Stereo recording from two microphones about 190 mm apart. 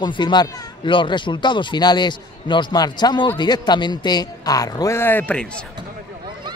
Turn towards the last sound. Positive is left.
turn(degrees=10)  # may be behind; listen again after turning